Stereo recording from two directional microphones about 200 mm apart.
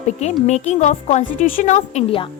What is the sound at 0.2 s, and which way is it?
A woman's voice, 35° left (ahead or behind).